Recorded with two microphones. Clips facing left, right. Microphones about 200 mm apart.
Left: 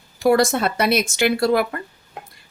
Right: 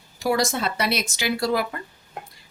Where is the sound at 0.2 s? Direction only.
55° left (ahead or behind).